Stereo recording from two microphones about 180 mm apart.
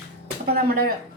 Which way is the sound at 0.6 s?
55° right (ahead or behind).